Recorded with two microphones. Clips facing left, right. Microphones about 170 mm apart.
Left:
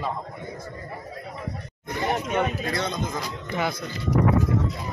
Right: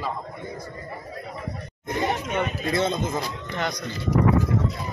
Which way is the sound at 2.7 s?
25° right (ahead or behind).